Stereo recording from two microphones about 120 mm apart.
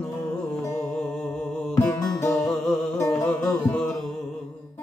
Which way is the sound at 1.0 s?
5° left (ahead or behind).